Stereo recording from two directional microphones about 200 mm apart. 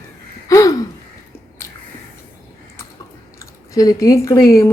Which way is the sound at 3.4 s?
15° left (ahead or behind).